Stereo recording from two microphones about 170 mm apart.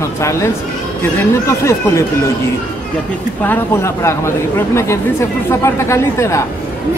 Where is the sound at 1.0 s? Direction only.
15° left (ahead or behind).